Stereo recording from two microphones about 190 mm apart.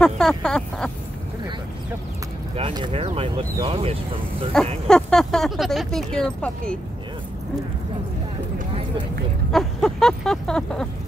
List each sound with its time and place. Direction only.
0.0 s speech: 5° left (ahead or behind)
2.5 s speech: 25° right (ahead or behind)
4.8 s speech: 5° left (ahead or behind)
9.5 s a sound: centre (ahead or behind)